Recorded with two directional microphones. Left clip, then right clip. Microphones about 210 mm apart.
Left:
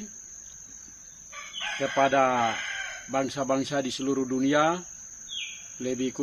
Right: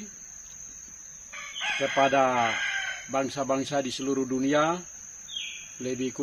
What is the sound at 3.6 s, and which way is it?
Speech, 25° left (ahead or behind).